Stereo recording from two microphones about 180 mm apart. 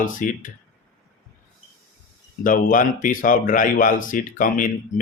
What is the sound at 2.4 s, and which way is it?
Speech, 50° left (ahead or behind).